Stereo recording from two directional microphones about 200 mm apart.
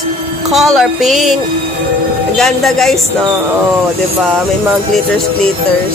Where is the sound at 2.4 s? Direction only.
Centre (ahead or behind).